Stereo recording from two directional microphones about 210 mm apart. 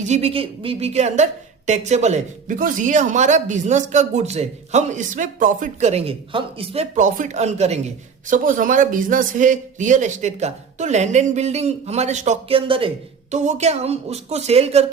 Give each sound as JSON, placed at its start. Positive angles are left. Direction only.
{"t": 0.0, "sound": "a woman's voice", "side_deg": -30}